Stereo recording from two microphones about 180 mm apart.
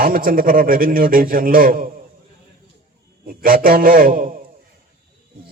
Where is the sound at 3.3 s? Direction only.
50° right (ahead or behind).